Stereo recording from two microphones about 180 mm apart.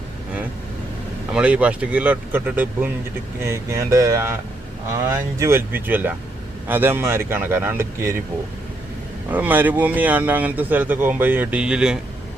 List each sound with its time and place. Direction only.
1.3 s a man's voice: 5° right (ahead or behind)
9.3 s a man's voice: 10° right (ahead or behind)